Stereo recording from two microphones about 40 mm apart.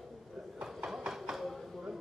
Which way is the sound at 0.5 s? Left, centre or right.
Centre.